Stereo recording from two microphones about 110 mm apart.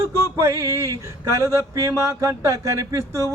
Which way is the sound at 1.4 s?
25° right (ahead or behind).